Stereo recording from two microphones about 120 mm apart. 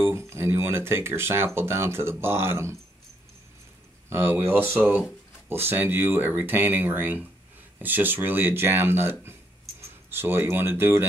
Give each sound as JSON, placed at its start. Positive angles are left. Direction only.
{"t": 0.0, "sound": "speech", "side_deg": -20}
{"t": 4.1, "sound": "speech", "side_deg": -20}